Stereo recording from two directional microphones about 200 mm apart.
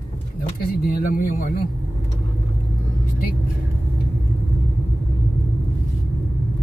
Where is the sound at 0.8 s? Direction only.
50° left (ahead or behind).